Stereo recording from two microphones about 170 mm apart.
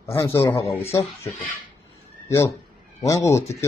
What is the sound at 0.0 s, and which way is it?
A man's voice, 15° left (ahead or behind).